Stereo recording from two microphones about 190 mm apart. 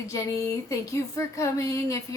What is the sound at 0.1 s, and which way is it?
Speech, 15° left (ahead or behind).